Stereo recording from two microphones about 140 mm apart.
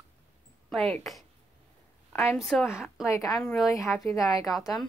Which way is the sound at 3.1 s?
20° left (ahead or behind).